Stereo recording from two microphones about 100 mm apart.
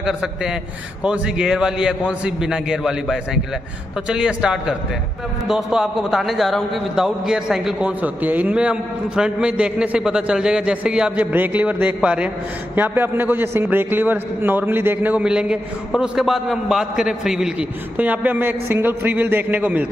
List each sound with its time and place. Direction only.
0.0 s a man's voice: 5° right (ahead or behind)
8.0 s a man's voice: 15° right (ahead or behind)
17.9 s a man's voice: 15° right (ahead or behind)